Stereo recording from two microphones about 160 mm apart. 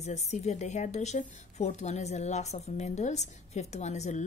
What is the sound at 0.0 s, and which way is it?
Speech, 45° left (ahead or behind).